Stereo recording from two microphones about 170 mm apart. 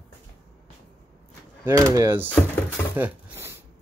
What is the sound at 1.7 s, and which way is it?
Speech, 15° right (ahead or behind).